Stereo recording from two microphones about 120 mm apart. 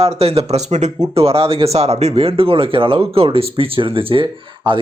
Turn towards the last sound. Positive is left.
turn(degrees=-40)  # may be behind; listen again after turning